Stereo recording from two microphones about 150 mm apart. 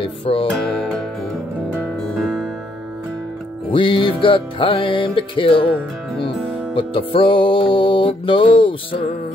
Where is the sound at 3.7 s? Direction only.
35° left (ahead or behind).